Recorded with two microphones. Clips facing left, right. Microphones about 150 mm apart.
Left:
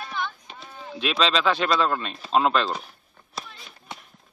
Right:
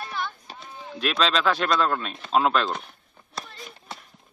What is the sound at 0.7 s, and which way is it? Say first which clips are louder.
Speech: even; centre (ahead or behind).